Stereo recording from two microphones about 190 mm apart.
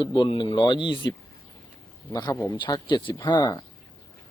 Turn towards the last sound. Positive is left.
turn(degrees=20)  # may be behind; listen again after turning